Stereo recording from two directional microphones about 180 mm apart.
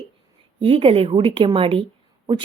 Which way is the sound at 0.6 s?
30° right (ahead or behind).